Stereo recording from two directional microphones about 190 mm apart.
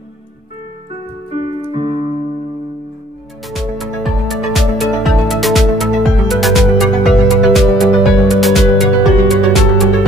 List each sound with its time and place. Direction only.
1.3 s keyboard: 30° right (ahead or behind)
3.4 s music: centre (ahead or behind)